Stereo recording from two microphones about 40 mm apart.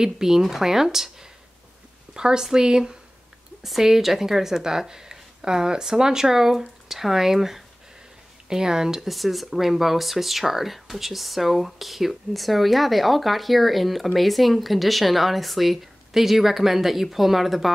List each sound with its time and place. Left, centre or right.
0.0 s speech: centre
2.1 s speech: centre
9.1 s speech: centre